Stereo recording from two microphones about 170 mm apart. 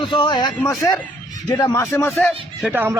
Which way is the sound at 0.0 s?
30° left (ahead or behind).